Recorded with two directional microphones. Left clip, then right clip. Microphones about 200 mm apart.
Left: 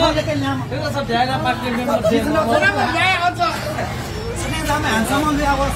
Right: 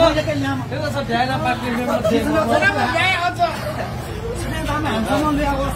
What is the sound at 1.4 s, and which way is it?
Speech, 10° right (ahead or behind).